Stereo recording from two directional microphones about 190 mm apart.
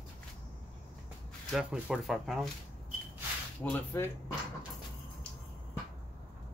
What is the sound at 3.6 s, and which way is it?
Speech, 10° left (ahead or behind).